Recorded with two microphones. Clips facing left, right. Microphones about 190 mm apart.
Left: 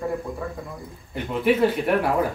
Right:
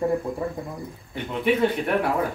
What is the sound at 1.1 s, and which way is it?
Speech, centre (ahead or behind).